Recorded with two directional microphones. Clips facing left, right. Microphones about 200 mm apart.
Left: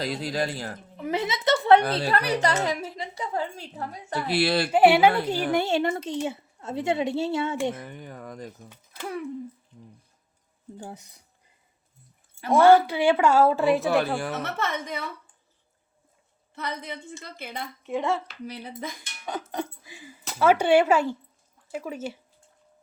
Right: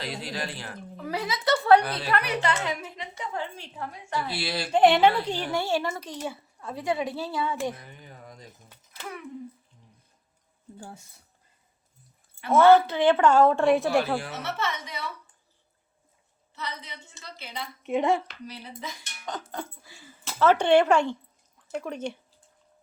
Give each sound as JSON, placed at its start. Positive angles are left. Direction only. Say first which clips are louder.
{"t": 0.0, "sound": "speech", "louder": "left 6 dB", "side_deg": 40}
{"t": 0.9, "sound": "a woman's voice", "louder": "left 3 dB", "side_deg": 20}
{"t": 2.0, "sound": "a woman's voice", "louder": "left 3 dB", "side_deg": 35}
{"t": 4.1, "sound": "speech", "louder": "left 7 dB", "side_deg": 65}
{"t": 4.7, "sound": "a woman's voice", "louder": "even", "side_deg": 5}
{"t": 7.8, "sound": "a woman's voice", "louder": "left 8 dB", "side_deg": 55}
{"t": 10.8, "sound": "a woman's voice", "louder": "left 4 dB", "side_deg": 20}
{"t": 12.5, "sound": "a woman's voice", "louder": "left 1 dB", "side_deg": 15}
{"t": 14.2, "sound": "a woman's voice", "louder": "left 3 dB", "side_deg": 50}
{"t": 16.6, "sound": "a woman's voice", "louder": "left 5 dB", "side_deg": 55}
{"t": 17.8, "sound": "speech", "louder": "right 3 dB", "side_deg": -20}
{"t": 18.4, "sound": "a woman's voice", "louder": "left 4 dB", "side_deg": 55}
{"t": 19.2, "sound": "a woman's voice", "louder": "left 4 dB", "side_deg": 15}